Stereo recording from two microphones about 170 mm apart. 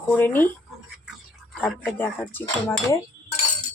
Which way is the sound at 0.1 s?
10° left (ahead or behind).